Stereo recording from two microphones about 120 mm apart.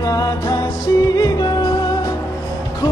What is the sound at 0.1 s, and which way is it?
Music, 30° left (ahead or behind).